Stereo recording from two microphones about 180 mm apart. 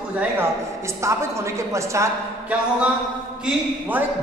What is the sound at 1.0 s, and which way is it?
A woman's voice, 15° right (ahead or behind).